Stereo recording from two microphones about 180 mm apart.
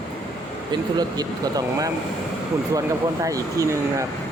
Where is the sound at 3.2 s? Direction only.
20° right (ahead or behind).